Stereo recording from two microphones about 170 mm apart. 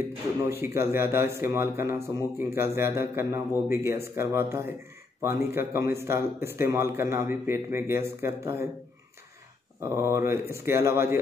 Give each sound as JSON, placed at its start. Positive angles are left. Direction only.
{"t": 0.5, "sound": "speech", "side_deg": -15}
{"t": 9.8, "sound": "speech", "side_deg": -15}